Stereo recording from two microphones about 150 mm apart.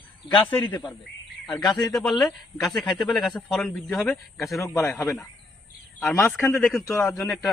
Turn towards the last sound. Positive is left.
turn(degrees=0)  # may be behind; listen again after turning